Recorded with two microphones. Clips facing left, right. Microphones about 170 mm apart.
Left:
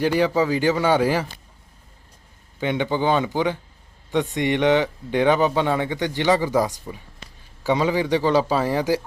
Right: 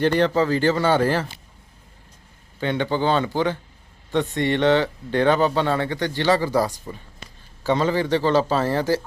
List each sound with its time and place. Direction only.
0.0 s speech: 10° left (ahead or behind)
2.6 s speech: 15° left (ahead or behind)